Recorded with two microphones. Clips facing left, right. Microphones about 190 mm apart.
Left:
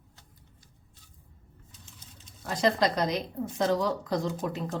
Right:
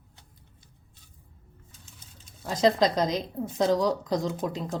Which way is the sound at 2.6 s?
20° right (ahead or behind).